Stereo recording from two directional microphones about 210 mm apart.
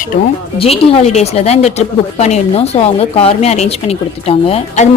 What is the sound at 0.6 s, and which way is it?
A woman's voice, 30° left (ahead or behind).